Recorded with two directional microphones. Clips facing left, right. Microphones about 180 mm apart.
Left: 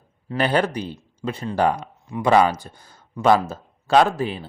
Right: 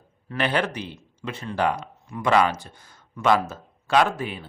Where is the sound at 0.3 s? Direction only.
40° left (ahead or behind).